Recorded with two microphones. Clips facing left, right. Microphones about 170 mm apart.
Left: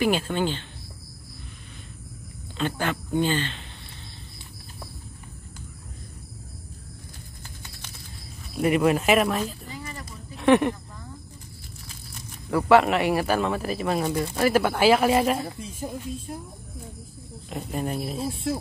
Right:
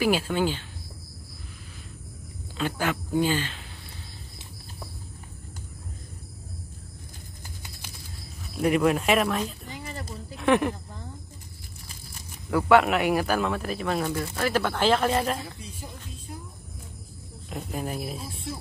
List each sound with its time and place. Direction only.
0.0 s speech: 5° right (ahead or behind)
2.5 s speech: 5° right (ahead or behind)
8.5 s speech: centre (ahead or behind)
9.7 s a sound: 30° right (ahead or behind)
10.3 s speech: centre (ahead or behind)
12.4 s speech: centre (ahead or behind)
17.5 s speech: centre (ahead or behind)